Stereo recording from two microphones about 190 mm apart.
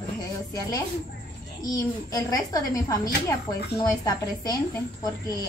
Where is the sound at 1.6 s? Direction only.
20° left (ahead or behind).